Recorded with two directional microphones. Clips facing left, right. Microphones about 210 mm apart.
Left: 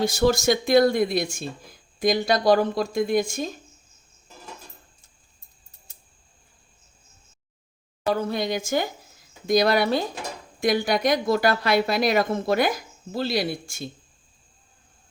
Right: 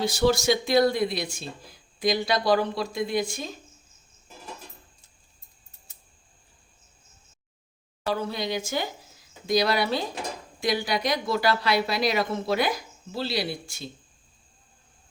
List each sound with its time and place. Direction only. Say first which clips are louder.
0.0 s speech: left 2 dB; 45° left (ahead or behind)
8.1 s speech: left 3 dB; 50° left (ahead or behind)